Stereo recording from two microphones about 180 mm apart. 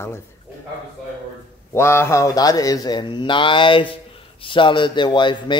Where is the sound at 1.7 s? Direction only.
15° left (ahead or behind).